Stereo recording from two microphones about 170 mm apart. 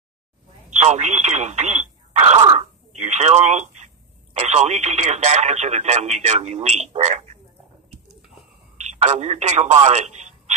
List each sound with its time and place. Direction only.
0.7 s speech: 40° right (ahead or behind)
8.7 s a man's voice: 45° right (ahead or behind)